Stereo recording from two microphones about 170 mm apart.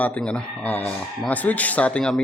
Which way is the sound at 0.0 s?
10° left (ahead or behind).